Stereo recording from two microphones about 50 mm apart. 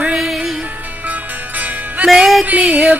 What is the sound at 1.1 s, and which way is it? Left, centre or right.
Music, right.